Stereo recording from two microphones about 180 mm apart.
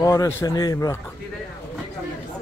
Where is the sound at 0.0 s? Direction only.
20° left (ahead or behind).